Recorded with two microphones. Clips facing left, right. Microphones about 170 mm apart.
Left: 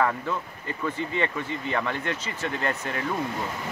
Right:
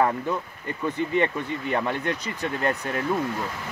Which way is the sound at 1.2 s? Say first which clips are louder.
Right 3 dB; 15° right (ahead or behind).